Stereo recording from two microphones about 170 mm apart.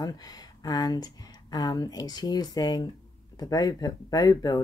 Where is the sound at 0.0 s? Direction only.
20° left (ahead or behind).